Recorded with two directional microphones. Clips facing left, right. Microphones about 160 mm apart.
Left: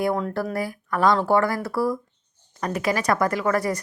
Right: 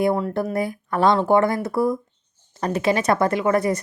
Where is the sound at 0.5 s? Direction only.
25° right (ahead or behind).